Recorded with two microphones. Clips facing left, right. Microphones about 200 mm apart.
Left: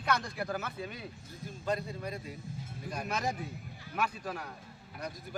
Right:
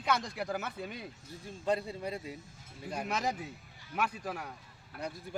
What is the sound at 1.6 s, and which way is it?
Speech, 30° right (ahead or behind).